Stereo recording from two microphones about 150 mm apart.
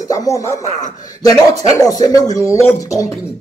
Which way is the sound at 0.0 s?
20° left (ahead or behind).